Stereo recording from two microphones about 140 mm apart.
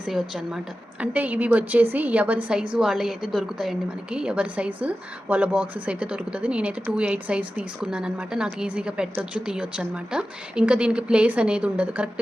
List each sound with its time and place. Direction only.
0.0 s a woman's voice: 5° right (ahead or behind)